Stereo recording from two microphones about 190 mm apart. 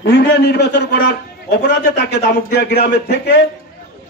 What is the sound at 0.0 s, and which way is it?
A man's voice, 55° left (ahead or behind).